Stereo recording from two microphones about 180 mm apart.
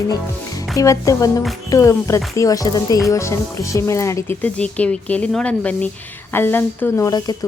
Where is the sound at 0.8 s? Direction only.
20° left (ahead or behind).